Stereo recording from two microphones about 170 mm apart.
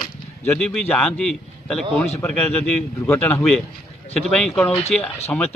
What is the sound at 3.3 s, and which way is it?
A man's voice, centre (ahead or behind).